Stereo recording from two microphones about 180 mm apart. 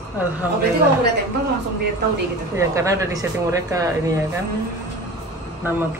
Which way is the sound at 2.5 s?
15° right (ahead or behind).